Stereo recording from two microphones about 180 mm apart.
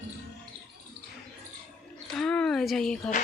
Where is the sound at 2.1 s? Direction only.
5° left (ahead or behind).